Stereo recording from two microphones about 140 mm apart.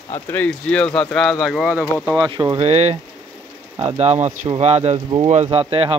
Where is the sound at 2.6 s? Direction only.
50° right (ahead or behind).